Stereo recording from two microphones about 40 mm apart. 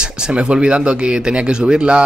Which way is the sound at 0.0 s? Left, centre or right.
Right.